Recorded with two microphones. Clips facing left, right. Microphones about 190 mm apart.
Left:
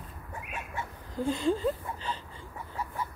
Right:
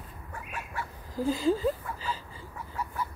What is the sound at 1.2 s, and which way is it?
Speech, 5° right (ahead or behind).